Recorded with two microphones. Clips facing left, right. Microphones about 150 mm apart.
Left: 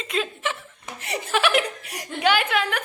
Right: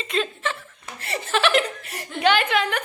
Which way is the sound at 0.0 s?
5° left (ahead or behind).